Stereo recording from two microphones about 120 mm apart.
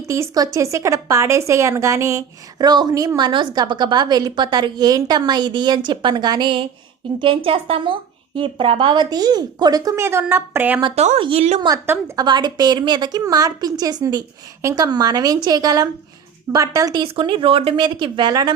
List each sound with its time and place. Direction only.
0.1 s a woman's voice: 30° right (ahead or behind)
10.9 s speech: 70° right (ahead or behind)
11.2 s a woman's voice: 55° right (ahead or behind)
11.9 s a woman's voice: 20° right (ahead or behind)
12.2 s a woman's voice: 40° right (ahead or behind)
17.0 s speech: 45° right (ahead or behind)